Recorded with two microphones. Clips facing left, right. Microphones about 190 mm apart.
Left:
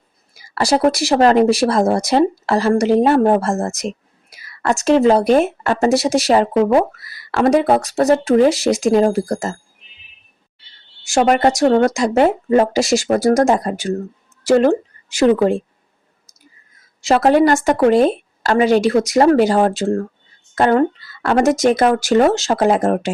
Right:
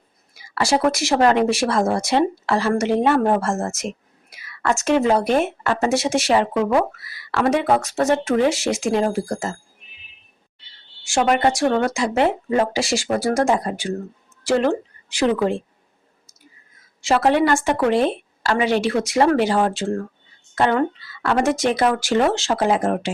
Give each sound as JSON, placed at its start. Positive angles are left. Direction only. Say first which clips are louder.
{"t": 0.3, "sound": "speech", "louder": "left 3 dB", "side_deg": 40}
{"t": 11.0, "sound": "a woman's voice", "louder": "left 4 dB", "side_deg": 40}
{"t": 17.0, "sound": "speech", "louder": "left 4 dB", "side_deg": 40}